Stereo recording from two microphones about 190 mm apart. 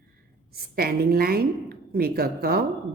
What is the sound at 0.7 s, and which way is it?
Speech, 55° right (ahead or behind).